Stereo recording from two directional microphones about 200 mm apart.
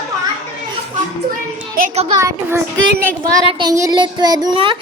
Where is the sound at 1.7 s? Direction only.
45° right (ahead or behind).